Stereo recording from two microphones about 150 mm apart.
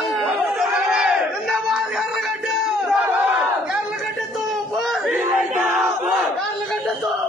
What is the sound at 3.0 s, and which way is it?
Battle cry, 10° right (ahead or behind).